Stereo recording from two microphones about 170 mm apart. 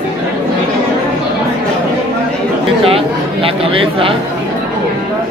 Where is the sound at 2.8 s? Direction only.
35° right (ahead or behind).